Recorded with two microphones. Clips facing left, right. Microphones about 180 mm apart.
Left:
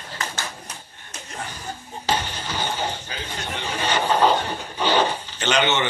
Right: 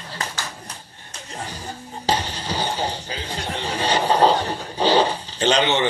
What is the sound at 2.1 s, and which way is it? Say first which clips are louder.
Music: right 2 dB; 35° right (ahead or behind).